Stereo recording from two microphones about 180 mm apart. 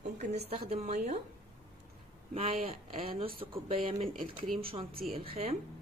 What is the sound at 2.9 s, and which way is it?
Speech, 35° right (ahead or behind).